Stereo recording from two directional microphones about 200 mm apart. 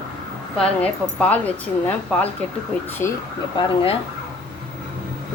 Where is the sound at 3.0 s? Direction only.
15° left (ahead or behind).